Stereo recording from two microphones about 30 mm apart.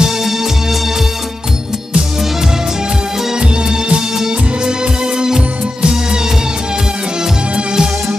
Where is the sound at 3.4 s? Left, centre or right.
Right.